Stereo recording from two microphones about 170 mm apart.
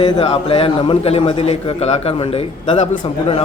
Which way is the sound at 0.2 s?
35° left (ahead or behind).